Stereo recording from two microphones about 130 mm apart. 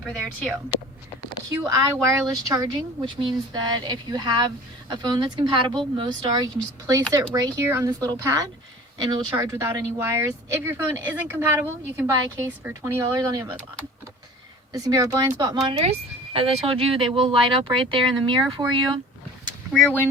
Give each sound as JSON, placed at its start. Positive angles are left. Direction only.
{"t": 1.5, "sound": "speech", "side_deg": -25}
{"t": 14.7, "sound": "speech", "side_deg": -30}
{"t": 15.8, "sound": "speech", "side_deg": -50}